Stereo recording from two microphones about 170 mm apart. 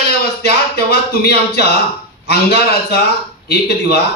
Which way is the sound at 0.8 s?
70° left (ahead or behind).